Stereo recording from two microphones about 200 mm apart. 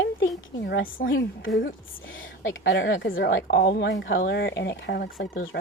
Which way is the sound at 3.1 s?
45° left (ahead or behind).